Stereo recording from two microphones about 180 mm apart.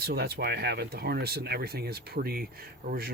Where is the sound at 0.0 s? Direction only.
60° right (ahead or behind).